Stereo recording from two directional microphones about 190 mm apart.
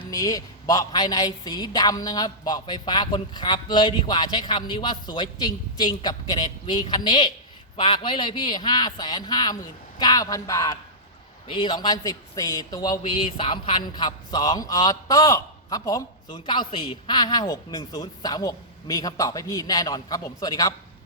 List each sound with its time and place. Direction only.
0.0 s a man's voice: 20° left (ahead or behind)